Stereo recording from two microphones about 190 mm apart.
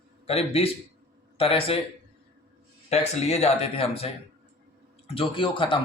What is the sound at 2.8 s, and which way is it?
A man's voice, 35° left (ahead or behind).